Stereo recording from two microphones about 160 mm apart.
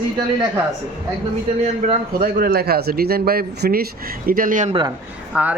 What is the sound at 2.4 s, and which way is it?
Speech, 75° right (ahead or behind).